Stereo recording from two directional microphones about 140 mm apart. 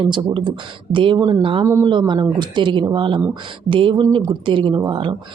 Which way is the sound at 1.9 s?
35° right (ahead or behind).